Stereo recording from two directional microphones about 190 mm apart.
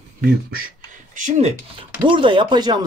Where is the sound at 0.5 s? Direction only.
45° right (ahead or behind).